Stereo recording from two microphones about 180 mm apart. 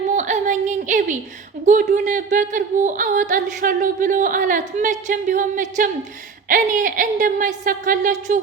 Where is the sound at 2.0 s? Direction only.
45° right (ahead or behind).